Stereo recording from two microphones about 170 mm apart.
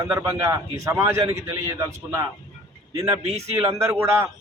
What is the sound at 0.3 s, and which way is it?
A man's voice, 20° right (ahead or behind).